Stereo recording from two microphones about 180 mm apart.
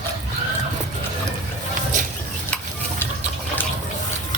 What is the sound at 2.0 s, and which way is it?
Stir, 45° right (ahead or behind).